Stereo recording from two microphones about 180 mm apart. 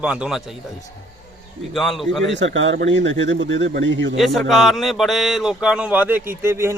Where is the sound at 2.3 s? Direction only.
90° right.